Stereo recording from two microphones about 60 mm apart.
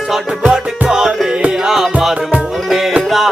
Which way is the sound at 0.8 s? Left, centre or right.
Centre.